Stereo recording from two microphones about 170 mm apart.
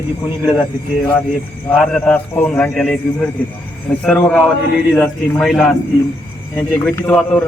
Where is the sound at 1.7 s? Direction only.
5° left (ahead or behind).